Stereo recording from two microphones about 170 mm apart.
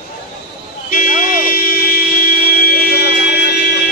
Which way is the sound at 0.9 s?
55° left (ahead or behind).